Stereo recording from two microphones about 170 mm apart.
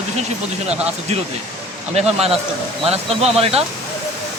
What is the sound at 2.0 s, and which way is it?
Speech, 35° right (ahead or behind).